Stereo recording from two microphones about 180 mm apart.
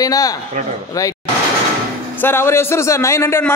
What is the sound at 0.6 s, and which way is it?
Speech, 45° right (ahead or behind).